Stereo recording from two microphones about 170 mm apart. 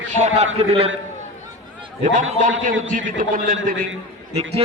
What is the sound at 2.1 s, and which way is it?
A man's voice, 50° right (ahead or behind).